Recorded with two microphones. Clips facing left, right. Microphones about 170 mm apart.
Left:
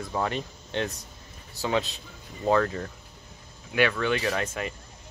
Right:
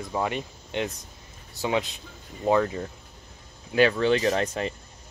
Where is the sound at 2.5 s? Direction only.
15° right (ahead or behind).